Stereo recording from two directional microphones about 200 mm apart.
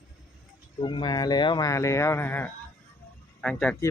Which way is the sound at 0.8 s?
25° left (ahead or behind).